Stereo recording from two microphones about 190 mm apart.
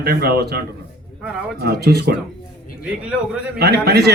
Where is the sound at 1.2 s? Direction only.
5° right (ahead or behind).